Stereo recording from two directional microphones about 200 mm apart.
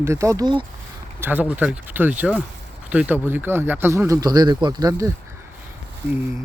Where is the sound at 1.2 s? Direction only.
10° right (ahead or behind).